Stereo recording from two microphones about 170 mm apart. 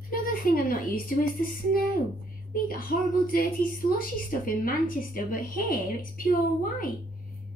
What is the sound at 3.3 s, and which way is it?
A woman's voice, 55° left (ahead or behind).